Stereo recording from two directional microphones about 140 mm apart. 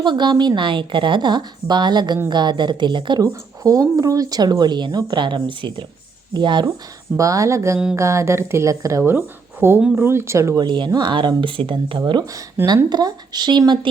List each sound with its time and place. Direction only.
0.0 s a woman's voice: 30° right (ahead or behind)